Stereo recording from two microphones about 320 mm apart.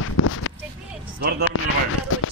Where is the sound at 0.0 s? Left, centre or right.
Left.